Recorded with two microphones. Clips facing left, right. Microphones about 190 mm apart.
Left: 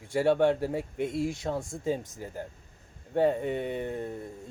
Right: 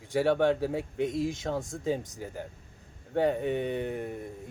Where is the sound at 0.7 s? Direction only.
15° right (ahead or behind).